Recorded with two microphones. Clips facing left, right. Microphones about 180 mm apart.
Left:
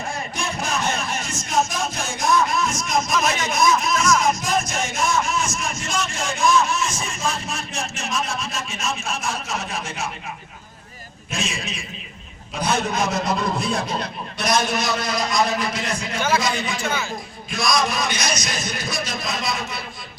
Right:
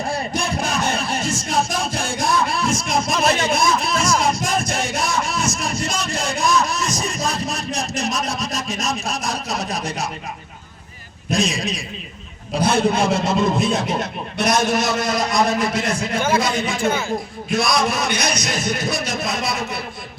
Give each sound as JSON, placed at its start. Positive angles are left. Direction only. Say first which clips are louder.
{"t": 0.1, "sound": "a sound", "louder": "right 5 dB", "side_deg": -35}
{"t": 11.3, "sound": "a man's voice", "louder": "right 8 dB", "side_deg": -35}
{"t": 14.3, "sound": "a man's voice", "louder": "right 3 dB", "side_deg": -55}